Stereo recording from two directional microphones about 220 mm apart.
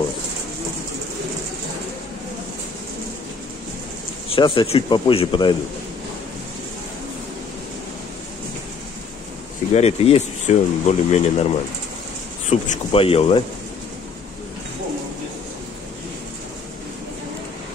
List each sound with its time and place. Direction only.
4.3 s speech: 25° left (ahead or behind)
9.8 s speech: 30° left (ahead or behind)
12.4 s speech: 25° left (ahead or behind)